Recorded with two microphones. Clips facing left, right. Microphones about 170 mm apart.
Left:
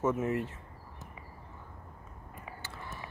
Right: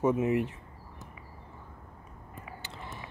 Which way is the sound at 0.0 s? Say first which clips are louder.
Right 4 dB; 15° right (ahead or behind).